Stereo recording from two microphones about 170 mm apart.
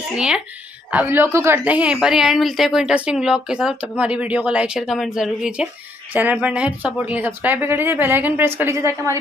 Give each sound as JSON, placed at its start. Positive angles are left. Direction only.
{"t": 0.1, "sound": "a woman's voice", "side_deg": -5}